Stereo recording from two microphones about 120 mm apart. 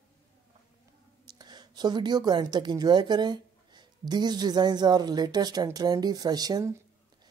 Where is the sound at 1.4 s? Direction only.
35° right (ahead or behind).